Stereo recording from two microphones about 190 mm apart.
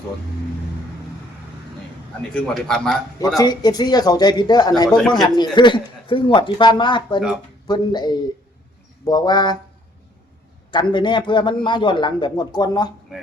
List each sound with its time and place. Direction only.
2.3 s a man's voice: 5° left (ahead or behind)
3.3 s speech: 20° left (ahead or behind)
4.9 s a man's voice: centre (ahead or behind)
5.2 s speech: 25° left (ahead or behind)
10.7 s speech: 25° left (ahead or behind)